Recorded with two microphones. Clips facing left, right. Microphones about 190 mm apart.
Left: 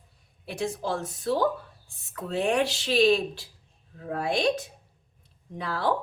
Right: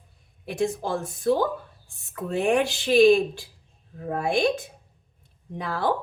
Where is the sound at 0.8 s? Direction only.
50° right (ahead or behind).